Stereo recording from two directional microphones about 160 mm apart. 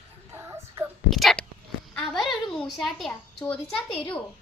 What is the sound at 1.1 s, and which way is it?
A child's voice, centre (ahead or behind).